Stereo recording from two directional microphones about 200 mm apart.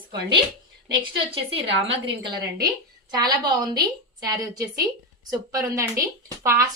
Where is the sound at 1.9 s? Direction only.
25° right (ahead or behind).